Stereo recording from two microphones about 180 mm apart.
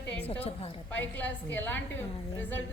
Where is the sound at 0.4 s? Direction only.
30° left (ahead or behind).